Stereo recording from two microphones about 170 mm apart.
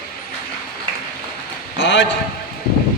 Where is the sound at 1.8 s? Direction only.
90° left.